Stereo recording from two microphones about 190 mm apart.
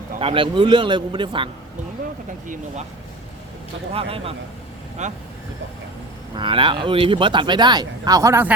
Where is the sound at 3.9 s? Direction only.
30° right (ahead or behind).